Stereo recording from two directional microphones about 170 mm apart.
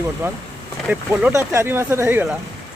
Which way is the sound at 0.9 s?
10° right (ahead or behind).